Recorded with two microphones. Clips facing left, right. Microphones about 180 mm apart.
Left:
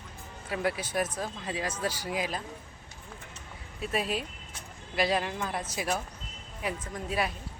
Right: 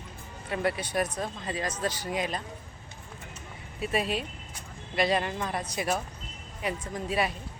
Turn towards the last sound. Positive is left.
turn(degrees=0)  # may be behind; listen again after turning